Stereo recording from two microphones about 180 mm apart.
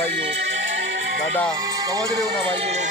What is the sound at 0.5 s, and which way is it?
Music, 90° right.